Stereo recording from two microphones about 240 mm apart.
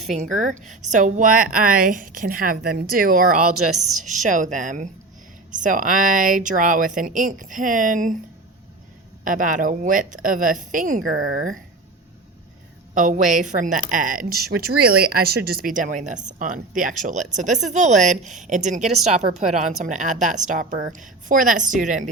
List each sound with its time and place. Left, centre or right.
0.1 s speech: right
3.8 s a woman's voice: centre
4.0 s speech: right
9.2 s speech: right
12.9 s a woman's voice: right